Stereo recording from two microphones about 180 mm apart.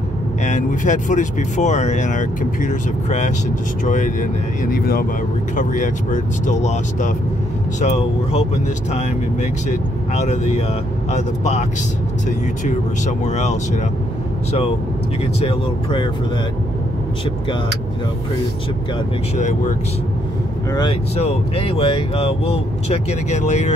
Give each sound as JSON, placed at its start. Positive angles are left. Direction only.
{"t": 0.4, "sound": "speech", "side_deg": 45}
{"t": 5.6, "sound": "speech", "side_deg": 45}
{"t": 15.4, "sound": "speech", "side_deg": 25}
{"t": 21.2, "sound": "speech", "side_deg": 30}